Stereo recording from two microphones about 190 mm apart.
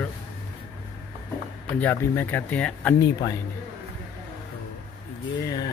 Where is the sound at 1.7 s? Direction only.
10° left (ahead or behind).